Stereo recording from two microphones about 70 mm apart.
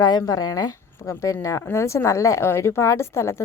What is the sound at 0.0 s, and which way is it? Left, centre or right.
A woman's voice, left.